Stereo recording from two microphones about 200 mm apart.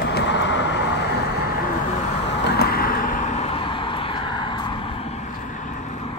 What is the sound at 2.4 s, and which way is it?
Vehicle, 55° left (ahead or behind).